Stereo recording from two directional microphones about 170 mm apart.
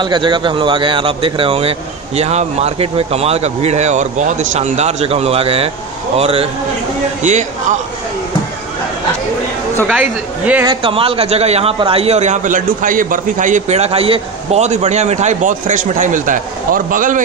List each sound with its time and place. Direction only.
0.0 s speech: 25° right (ahead or behind)
9.9 s speech: 10° right (ahead or behind)
10.7 s a man's voice: 30° right (ahead or behind); by 17.2 s 50° right (ahead or behind)